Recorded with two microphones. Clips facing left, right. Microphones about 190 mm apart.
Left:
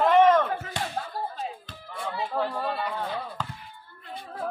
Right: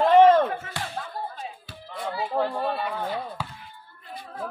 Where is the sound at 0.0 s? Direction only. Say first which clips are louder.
Right 3 dB; 30° right (ahead or behind).